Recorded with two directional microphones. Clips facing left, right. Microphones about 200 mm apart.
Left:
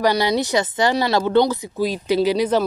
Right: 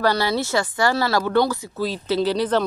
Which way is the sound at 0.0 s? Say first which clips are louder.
Left 2 dB; 15° left (ahead or behind).